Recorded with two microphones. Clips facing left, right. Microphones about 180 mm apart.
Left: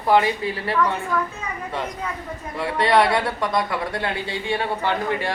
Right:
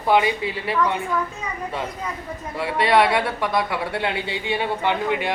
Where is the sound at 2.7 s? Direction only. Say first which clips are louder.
Even; 25° right (ahead or behind).